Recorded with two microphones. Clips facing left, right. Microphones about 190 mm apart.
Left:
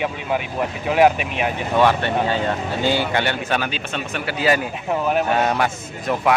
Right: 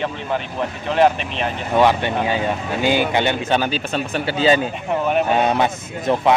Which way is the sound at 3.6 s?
35° right (ahead or behind).